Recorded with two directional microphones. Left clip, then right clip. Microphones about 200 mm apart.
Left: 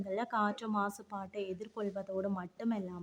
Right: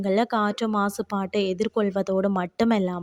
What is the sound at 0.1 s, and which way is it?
Speech, 35° right (ahead or behind).